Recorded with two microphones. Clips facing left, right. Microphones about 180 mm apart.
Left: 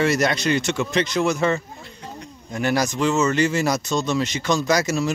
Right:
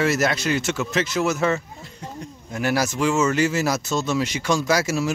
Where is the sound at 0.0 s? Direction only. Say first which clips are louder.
Left 1 dB; 5° right (ahead or behind).